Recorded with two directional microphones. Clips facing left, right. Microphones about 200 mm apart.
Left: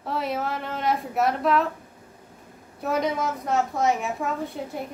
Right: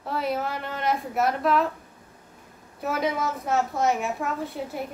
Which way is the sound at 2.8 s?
Centre (ahead or behind).